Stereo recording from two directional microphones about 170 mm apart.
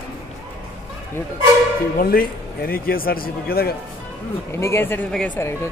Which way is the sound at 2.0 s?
60° left (ahead or behind).